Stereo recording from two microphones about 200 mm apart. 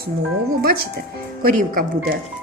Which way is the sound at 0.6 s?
50° right (ahead or behind).